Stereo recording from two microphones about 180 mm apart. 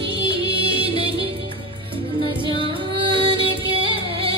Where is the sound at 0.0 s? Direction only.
30° right (ahead or behind).